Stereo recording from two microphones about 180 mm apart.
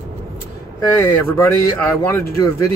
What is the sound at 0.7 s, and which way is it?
Speech, 15° left (ahead or behind).